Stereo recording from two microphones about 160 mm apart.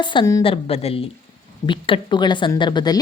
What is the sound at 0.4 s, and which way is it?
A woman's voice, 35° left (ahead or behind).